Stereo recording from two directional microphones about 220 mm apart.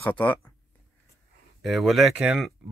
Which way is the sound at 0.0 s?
5° left (ahead or behind).